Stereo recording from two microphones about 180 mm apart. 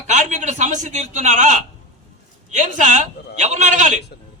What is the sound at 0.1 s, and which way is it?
A man's voice, 45° right (ahead or behind).